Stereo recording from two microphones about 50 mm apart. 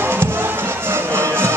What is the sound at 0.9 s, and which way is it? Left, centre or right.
Music, right.